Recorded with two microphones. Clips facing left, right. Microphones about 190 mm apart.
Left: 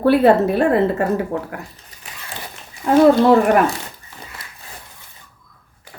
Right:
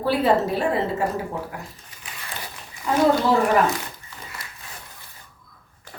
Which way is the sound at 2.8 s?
60° left (ahead or behind).